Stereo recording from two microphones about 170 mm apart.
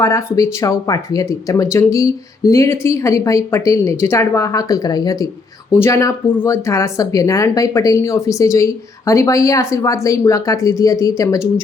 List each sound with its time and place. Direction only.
0.0 s speech: 15° left (ahead or behind)